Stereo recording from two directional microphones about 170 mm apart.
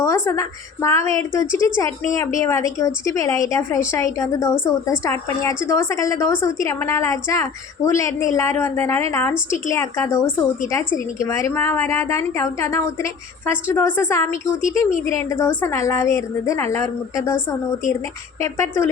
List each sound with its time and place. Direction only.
0.0 s a woman's voice: 15° left (ahead or behind)